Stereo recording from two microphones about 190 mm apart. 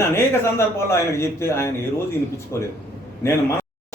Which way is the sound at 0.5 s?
15° left (ahead or behind).